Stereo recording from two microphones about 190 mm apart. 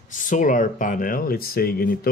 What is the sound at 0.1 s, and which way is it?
Speech, 40° left (ahead or behind).